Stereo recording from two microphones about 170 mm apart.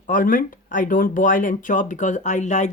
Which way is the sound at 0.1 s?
55° left (ahead or behind).